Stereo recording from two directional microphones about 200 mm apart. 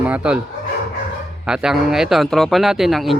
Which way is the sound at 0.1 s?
5° right (ahead or behind).